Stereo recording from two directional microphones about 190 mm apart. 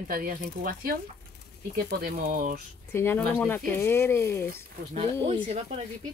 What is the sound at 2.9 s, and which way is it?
Speech, 10° left (ahead or behind).